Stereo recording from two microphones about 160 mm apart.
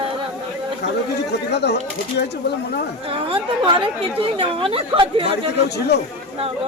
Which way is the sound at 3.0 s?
30° right (ahead or behind).